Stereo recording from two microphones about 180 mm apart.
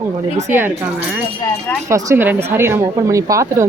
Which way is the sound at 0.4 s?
10° right (ahead or behind).